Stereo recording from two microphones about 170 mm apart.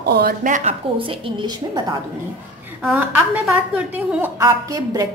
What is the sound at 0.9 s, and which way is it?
A woman's voice, 30° right (ahead or behind).